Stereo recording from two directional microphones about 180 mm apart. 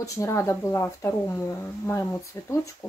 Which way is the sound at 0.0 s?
15° left (ahead or behind).